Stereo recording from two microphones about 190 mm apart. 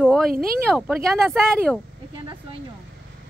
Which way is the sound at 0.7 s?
Centre (ahead or behind).